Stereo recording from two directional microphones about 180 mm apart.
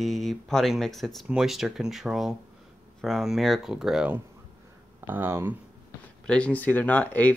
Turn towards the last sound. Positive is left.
turn(degrees=10)  # may be behind; listen again after turning